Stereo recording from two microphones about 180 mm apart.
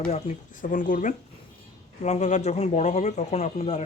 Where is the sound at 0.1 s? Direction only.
45° left (ahead or behind).